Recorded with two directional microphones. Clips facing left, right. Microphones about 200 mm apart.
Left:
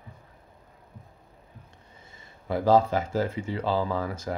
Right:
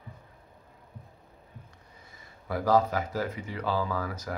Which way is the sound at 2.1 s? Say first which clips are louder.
Left 4 dB; 25° left (ahead or behind).